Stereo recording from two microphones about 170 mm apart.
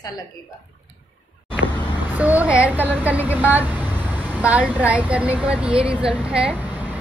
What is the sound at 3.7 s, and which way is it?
Vehicle, 25° left (ahead or behind).